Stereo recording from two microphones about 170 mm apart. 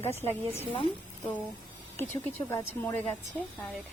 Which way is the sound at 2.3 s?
15° left (ahead or behind).